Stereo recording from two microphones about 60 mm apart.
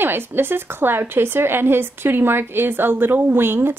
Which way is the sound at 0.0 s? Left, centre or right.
Right.